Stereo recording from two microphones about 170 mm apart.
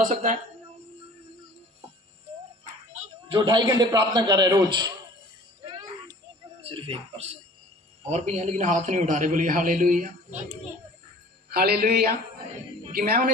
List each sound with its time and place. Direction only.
0.0 s a man's voice: 45° right (ahead or behind)
3.0 s a man's voice: 30° right (ahead or behind)
5.7 s a sound: 25° right (ahead or behind)
6.6 s a man's voice: 30° right (ahead or behind); by 10.1 s 50° right (ahead or behind)
11.5 s a man's voice: 60° right (ahead or behind)